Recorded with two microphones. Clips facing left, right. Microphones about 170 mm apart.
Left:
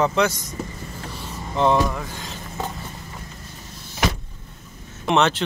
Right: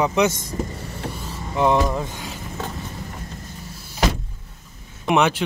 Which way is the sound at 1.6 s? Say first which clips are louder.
Even; 15° right (ahead or behind).